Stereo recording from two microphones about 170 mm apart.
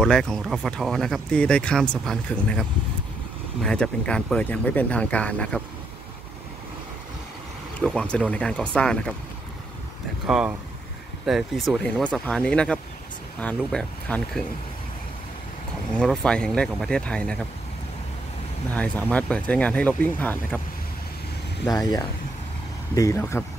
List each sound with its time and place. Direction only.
0.0 s speech: 5° left (ahead or behind)
3.6 s speech: 5° left (ahead or behind)
7.8 s speech: 5° left (ahead or behind)
10.2 s speech: 5° right (ahead or behind)
16.0 s speech: 5° left (ahead or behind)
18.8 s speech: 10° left (ahead or behind)
21.6 s speech: 20° left (ahead or behind)